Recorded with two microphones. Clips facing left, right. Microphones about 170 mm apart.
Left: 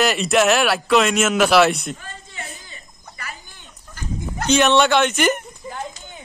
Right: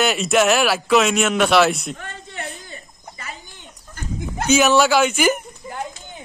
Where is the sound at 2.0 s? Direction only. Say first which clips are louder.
Right 4 dB; 70° right (ahead or behind).